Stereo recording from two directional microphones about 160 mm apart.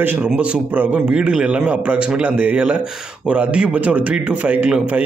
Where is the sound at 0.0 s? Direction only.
10° right (ahead or behind).